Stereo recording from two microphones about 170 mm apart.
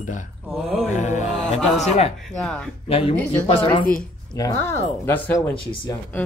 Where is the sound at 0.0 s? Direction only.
45° left (ahead or behind).